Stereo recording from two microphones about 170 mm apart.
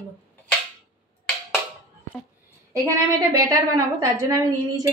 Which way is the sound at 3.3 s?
20° right (ahead or behind).